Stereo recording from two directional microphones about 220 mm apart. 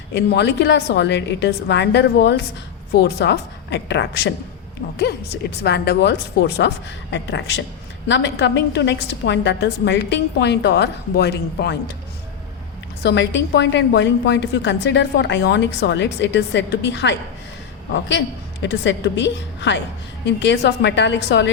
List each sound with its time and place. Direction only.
0.1 s a woman's voice: 50° left (ahead or behind)
13.0 s a woman's voice: 50° left (ahead or behind)
18.6 s a woman's voice: 55° left (ahead or behind)